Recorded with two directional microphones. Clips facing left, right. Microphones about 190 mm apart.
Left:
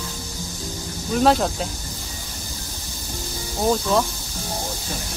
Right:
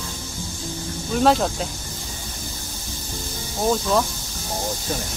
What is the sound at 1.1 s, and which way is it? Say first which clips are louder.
Speech: even; centre (ahead or behind).